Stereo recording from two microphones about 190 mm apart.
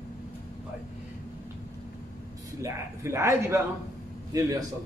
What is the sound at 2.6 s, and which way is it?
A man's voice, 15° right (ahead or behind).